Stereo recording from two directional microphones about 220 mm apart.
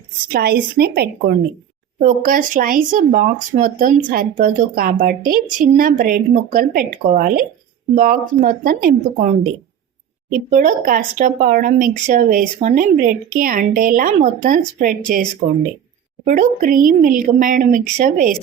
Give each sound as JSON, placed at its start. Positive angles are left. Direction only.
{"t": 0.3, "sound": "speech", "side_deg": -45}
{"t": 10.5, "sound": "speech", "side_deg": -35}
{"t": 16.2, "sound": "speech", "side_deg": -35}